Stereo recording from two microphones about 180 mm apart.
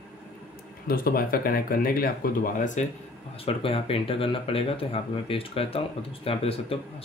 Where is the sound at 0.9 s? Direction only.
55° left (ahead or behind).